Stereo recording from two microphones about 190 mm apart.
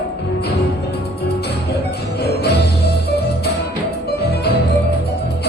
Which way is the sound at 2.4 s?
60° left (ahead or behind).